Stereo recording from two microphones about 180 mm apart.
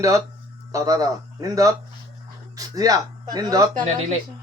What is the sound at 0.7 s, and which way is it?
Speech, 20° right (ahead or behind).